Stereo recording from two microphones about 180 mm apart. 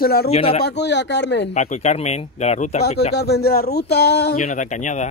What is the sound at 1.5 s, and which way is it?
Speech, 40° left (ahead or behind).